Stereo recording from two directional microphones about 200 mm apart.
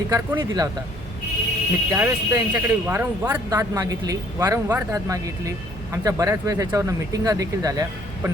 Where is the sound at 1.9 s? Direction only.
15° right (ahead or behind).